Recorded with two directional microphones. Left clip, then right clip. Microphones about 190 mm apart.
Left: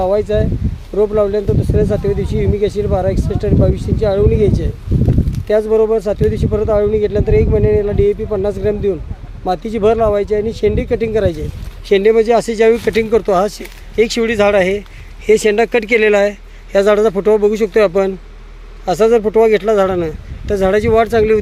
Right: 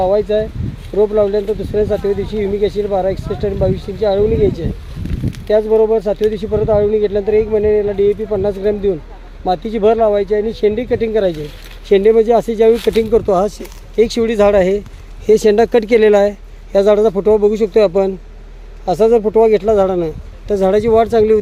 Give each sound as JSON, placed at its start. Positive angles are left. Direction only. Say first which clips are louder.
{"t": 0.0, "sound": "a man's voice", "louder": "right 1 dB", "side_deg": 0}